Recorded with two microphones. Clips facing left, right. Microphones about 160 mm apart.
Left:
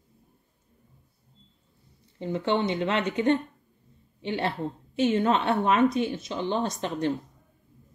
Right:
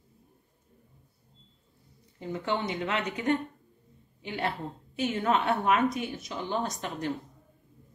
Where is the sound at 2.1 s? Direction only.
25° left (ahead or behind).